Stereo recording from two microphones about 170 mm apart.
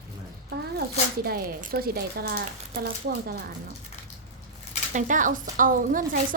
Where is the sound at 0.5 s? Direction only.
65° right (ahead or behind).